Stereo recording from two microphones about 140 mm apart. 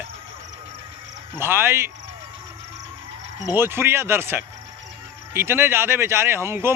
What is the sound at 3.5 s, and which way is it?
Speech, 15° right (ahead or behind).